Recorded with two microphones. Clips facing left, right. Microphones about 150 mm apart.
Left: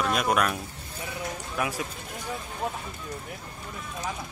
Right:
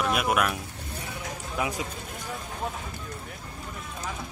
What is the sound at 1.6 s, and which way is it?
Speech, 20° right (ahead or behind).